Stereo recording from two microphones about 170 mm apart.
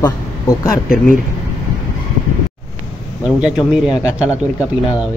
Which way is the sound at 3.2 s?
5° right (ahead or behind).